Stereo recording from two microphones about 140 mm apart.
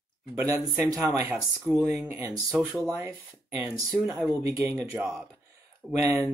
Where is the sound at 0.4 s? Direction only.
25° right (ahead or behind).